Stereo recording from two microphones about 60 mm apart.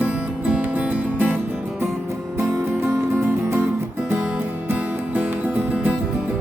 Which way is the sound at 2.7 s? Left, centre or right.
Right.